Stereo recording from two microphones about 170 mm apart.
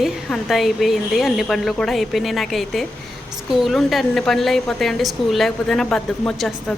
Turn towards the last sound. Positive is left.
turn(degrees=0)  # may be behind; listen again after turning